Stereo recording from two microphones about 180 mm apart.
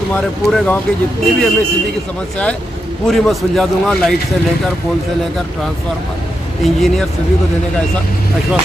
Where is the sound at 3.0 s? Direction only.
Centre (ahead or behind).